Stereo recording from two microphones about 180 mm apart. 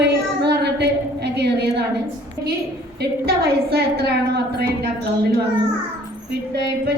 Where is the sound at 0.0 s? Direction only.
65° right (ahead or behind).